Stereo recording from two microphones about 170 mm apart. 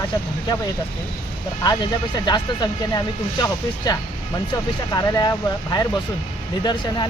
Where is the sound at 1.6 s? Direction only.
25° left (ahead or behind).